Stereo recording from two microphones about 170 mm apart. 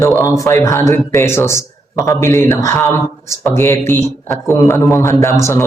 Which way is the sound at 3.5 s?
15° left (ahead or behind).